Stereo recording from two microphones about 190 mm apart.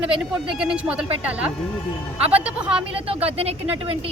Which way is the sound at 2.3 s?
30° right (ahead or behind).